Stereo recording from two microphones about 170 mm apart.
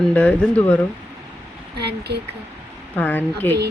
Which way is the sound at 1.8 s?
75° right (ahead or behind).